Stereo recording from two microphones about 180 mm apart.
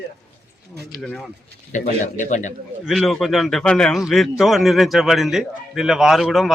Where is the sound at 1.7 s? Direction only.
45° left (ahead or behind).